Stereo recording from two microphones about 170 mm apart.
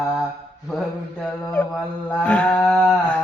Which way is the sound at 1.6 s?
10° left (ahead or behind).